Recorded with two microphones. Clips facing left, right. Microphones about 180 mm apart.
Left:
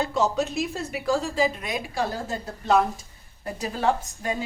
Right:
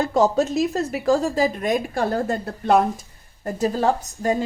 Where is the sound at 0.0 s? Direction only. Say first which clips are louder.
Right 5 dB; 45° right (ahead or behind).